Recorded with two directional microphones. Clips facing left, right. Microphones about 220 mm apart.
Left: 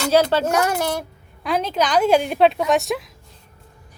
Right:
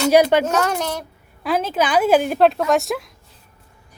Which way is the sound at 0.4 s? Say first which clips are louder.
Left 1 dB; 10° left (ahead or behind).